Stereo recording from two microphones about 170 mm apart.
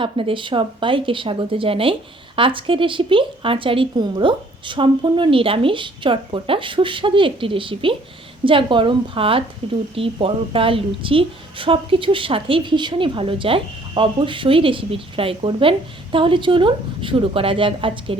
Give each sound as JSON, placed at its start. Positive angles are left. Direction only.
{"t": 0.0, "sound": "speech", "side_deg": -30}